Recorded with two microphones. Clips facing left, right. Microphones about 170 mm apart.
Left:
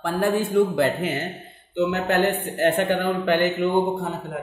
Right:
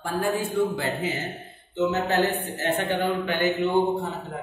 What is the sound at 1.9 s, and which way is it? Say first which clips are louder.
A man's voice: left 1 dB; 65° left (ahead or behind).